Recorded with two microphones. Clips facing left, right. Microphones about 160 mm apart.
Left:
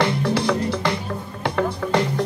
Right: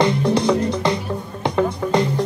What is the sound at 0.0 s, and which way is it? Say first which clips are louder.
Music: right 3 dB; 15° right (ahead or behind).